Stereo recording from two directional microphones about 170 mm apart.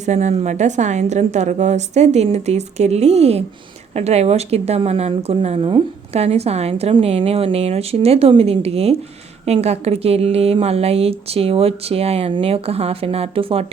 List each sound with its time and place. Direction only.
0.0 s a woman's voice: 45° right (ahead or behind)